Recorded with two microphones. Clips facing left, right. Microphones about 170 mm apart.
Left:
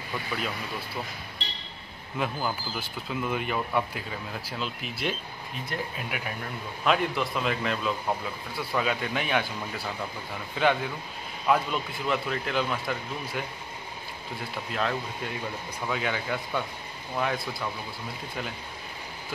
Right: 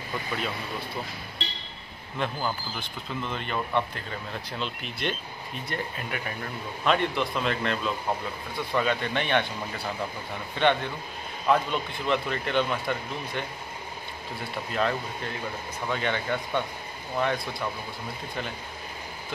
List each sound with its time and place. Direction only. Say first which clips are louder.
2.1 s speech: even; 5° left (ahead or behind)